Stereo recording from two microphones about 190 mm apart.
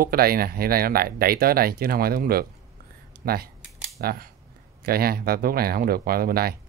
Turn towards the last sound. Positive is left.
turn(degrees=-55)  # may be behind; listen again after turning